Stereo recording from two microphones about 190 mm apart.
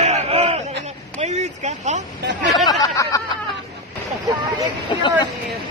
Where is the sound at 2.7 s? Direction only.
20° left (ahead or behind).